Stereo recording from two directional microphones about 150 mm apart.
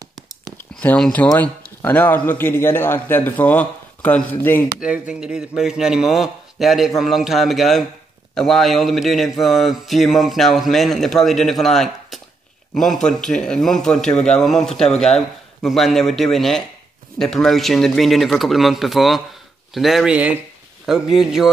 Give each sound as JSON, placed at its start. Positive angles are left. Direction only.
{"t": 0.0, "sound": "a sound", "side_deg": -25}
{"t": 0.6, "sound": "speech", "side_deg": 10}
{"t": 4.7, "sound": "a man's voice", "side_deg": -5}